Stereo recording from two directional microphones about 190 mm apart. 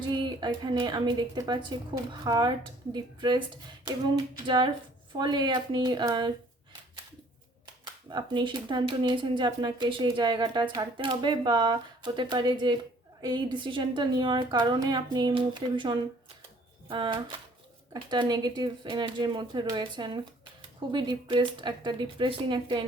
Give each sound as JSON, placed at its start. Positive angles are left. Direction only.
{"t": 0.0, "sound": "speech", "side_deg": -25}
{"t": 4.4, "sound": "speech", "side_deg": -25}
{"t": 8.1, "sound": "speech", "side_deg": -25}